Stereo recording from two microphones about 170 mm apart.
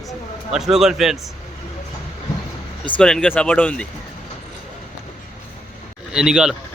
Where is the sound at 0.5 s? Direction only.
Centre (ahead or behind).